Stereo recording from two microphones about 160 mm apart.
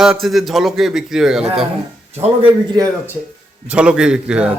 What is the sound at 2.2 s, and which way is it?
Speech, 35° right (ahead or behind).